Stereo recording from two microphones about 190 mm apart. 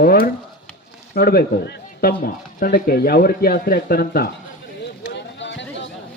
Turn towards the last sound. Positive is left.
turn(degrees=70)  # may be behind; listen again after turning